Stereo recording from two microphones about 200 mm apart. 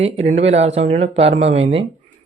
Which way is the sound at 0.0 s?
30° right (ahead or behind).